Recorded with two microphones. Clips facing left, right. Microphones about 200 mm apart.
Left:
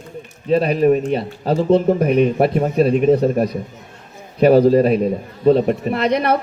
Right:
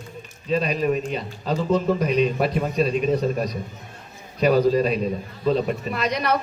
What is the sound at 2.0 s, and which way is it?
A woman's voice, 55° left (ahead or behind).